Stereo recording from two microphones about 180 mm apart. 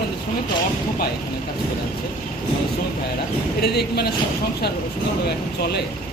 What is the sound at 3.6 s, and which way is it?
Speech, 65° left (ahead or behind).